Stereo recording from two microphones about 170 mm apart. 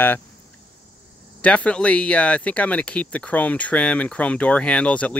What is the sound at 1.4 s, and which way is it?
Speech, 5° left (ahead or behind).